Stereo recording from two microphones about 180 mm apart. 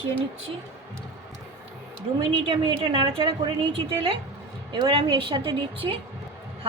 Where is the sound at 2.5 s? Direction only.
30° right (ahead or behind).